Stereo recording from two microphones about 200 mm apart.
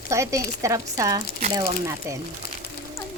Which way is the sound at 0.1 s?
15° right (ahead or behind).